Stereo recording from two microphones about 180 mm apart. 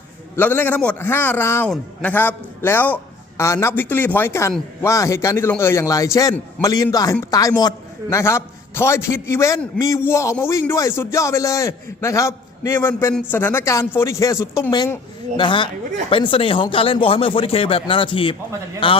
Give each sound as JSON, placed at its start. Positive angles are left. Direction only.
{"t": 0.3, "sound": "a man's voice", "side_deg": 10}